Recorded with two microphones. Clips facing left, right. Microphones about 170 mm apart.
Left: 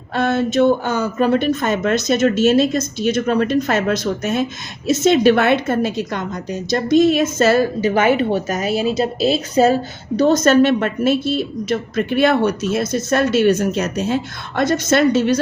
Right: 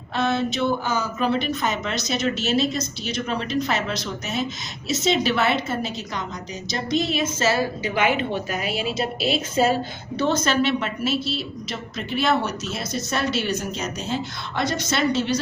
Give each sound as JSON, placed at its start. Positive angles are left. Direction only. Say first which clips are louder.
{"t": 0.1, "sound": "a woman's voice", "louder": "left 5 dB", "side_deg": 50}
{"t": 10.2, "sound": "a woman's voice", "louder": "left 9 dB", "side_deg": 40}